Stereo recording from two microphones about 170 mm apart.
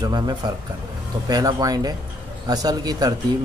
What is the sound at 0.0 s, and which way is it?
Speech, 25° right (ahead or behind).